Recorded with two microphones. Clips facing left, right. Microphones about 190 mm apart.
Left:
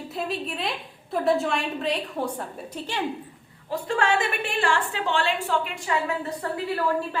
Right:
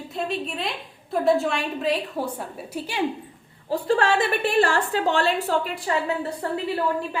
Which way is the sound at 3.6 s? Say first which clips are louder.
Right 3 dB; 35° right (ahead or behind).